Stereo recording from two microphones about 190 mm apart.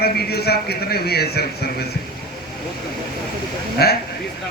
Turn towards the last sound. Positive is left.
turn(degrees=55)  # may be behind; listen again after turning